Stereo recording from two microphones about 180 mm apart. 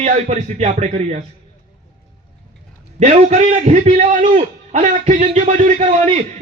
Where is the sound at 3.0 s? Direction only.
40° right (ahead or behind).